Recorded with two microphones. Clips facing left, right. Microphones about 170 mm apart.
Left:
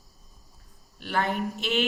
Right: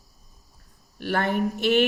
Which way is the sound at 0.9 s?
55° right (ahead or behind).